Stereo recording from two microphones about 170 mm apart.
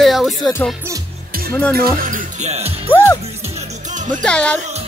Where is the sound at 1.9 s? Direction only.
50° right (ahead or behind).